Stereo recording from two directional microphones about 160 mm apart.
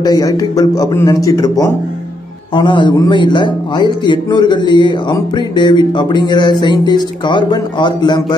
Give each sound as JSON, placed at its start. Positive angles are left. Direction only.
{"t": 0.0, "sound": "a man's voice", "side_deg": 25}